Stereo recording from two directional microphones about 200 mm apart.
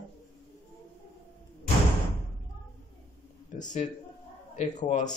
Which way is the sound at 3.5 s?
40° left (ahead or behind).